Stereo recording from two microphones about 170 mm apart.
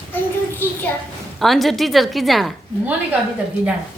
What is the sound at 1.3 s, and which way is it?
A woman's voice, centre (ahead or behind).